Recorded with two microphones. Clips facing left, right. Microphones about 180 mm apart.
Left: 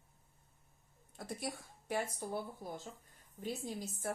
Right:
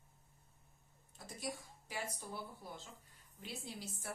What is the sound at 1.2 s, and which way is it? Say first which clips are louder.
Speech: left 3 dB; 60° left (ahead or behind).